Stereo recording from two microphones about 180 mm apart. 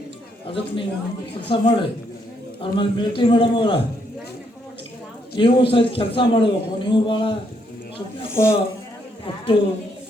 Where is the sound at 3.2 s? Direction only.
30° left (ahead or behind).